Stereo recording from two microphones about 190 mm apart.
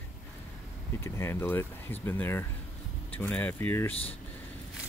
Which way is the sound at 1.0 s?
15° left (ahead or behind).